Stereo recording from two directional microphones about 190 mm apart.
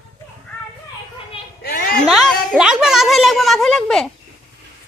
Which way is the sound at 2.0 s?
Centre (ahead or behind).